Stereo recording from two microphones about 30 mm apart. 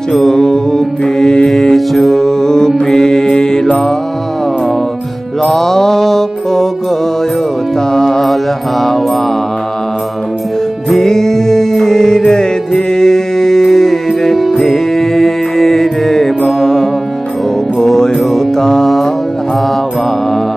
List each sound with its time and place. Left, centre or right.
0.3 s mantra: centre
1.5 s mantra: centre
2.2 s mantra: centre
5.4 s mantra: centre
7.9 s mantra: centre
10.9 s music: centre